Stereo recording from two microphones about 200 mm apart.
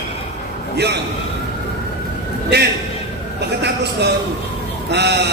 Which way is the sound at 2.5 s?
55° right (ahead or behind).